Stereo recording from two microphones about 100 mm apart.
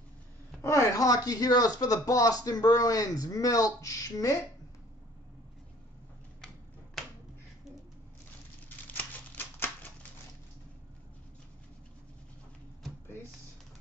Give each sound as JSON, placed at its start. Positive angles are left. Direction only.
{"t": 0.6, "sound": "speech", "side_deg": 30}
{"t": 8.6, "sound": "typewriter", "side_deg": 20}